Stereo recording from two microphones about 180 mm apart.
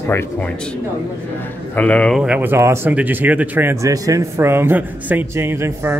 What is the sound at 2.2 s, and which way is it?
Speech, 10° right (ahead or behind).